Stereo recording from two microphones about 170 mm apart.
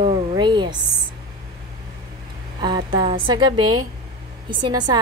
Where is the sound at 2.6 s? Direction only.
25° right (ahead or behind).